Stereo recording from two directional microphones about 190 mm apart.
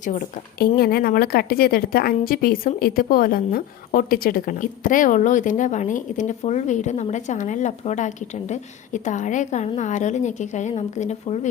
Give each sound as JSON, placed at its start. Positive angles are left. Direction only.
{"t": 0.0, "sound": "a woman's voice", "side_deg": 45}